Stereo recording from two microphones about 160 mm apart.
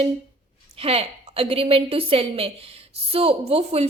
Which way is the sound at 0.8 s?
35° right (ahead or behind).